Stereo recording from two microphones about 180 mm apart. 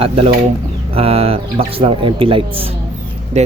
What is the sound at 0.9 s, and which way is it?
Speech, 35° right (ahead or behind).